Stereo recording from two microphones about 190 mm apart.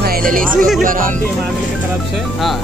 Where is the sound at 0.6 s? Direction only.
Centre (ahead or behind).